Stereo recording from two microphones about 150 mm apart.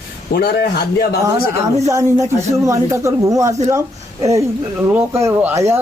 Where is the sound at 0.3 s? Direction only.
90° left.